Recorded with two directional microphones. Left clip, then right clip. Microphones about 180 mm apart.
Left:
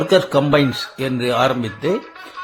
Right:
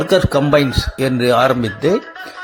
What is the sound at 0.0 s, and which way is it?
Speech, 20° right (ahead or behind).